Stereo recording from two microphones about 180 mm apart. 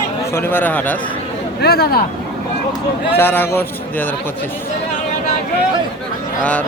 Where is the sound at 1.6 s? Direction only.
60° left (ahead or behind).